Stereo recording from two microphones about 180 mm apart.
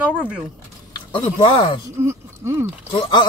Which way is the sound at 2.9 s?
25° left (ahead or behind).